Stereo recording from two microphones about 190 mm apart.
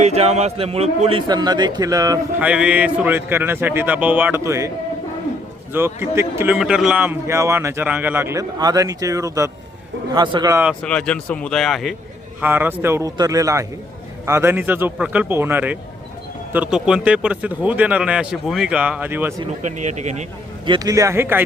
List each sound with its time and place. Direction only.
0.0 s a man's voice: 35° right (ahead or behind)
1.3 s speech: 20° right (ahead or behind)
2.4 s a man's voice: 5° right (ahead or behind)
5.7 s a man's voice: 15° right (ahead or behind)
10.8 s speech: 5° left (ahead or behind)
12.4 s a man's voice: 10° right (ahead or behind)
19.6 s a man's voice: 40° right (ahead or behind)
20.7 s a man's voice: 20° right (ahead or behind)